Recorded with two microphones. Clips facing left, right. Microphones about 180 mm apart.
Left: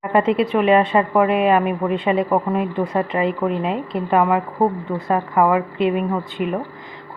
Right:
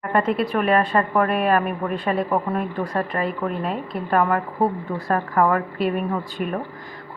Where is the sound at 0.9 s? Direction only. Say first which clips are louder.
Left 4 dB; 10° left (ahead or behind).